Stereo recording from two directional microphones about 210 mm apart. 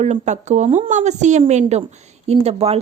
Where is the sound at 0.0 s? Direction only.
35° right (ahead or behind).